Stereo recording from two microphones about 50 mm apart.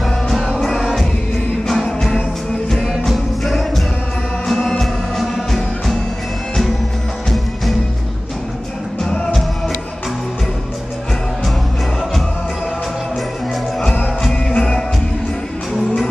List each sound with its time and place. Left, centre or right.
0.0 s music: centre
7.2 s music: centre
14.2 s music: centre